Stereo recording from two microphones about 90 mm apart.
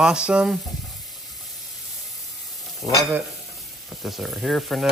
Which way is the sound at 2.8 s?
10° right (ahead or behind).